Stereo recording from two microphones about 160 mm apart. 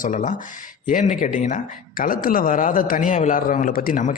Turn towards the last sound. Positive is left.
turn(degrees=60)  # may be behind; listen again after turning